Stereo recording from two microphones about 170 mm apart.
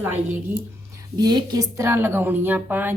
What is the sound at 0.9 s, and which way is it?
A woman's voice, 25° right (ahead or behind).